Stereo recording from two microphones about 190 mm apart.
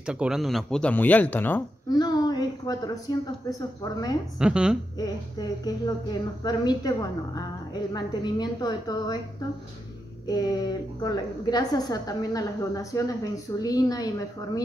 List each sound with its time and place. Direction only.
0.0 s speech: 5° right (ahead or behind)
2.0 s a woman's voice: 20° left (ahead or behind)
4.4 s speech: 5° right (ahead or behind)
4.9 s a woman's voice: 20° left (ahead or behind)
10.2 s a woman's voice: 20° left (ahead or behind)